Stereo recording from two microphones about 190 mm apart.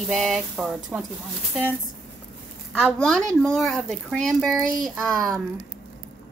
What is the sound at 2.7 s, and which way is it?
A woman's voice, centre (ahead or behind).